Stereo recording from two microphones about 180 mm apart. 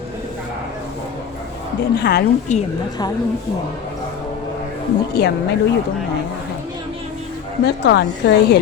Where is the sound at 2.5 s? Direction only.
40° left (ahead or behind).